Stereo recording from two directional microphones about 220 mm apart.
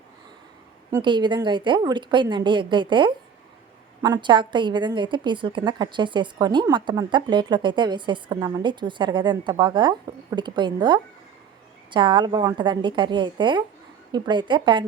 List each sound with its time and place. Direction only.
0.9 s a woman's voice: 20° right (ahead or behind)